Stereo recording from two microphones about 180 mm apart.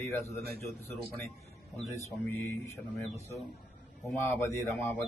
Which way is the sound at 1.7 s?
Centre (ahead or behind).